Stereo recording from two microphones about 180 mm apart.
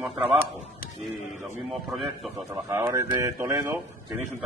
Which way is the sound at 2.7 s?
15° right (ahead or behind).